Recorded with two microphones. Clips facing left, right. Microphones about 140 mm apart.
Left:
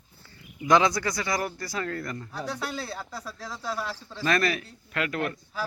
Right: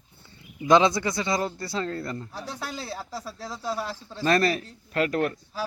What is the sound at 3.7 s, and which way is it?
Speech, 35° right (ahead or behind).